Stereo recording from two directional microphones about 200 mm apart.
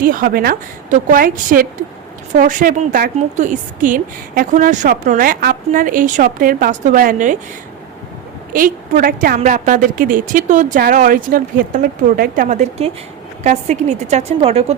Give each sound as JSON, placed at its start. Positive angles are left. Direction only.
{"t": 0.0, "sound": "a woman's voice", "side_deg": -45}
{"t": 8.5, "sound": "a woman's voice", "side_deg": -45}